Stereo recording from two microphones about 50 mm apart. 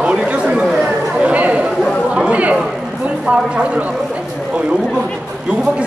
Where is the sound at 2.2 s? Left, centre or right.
Right.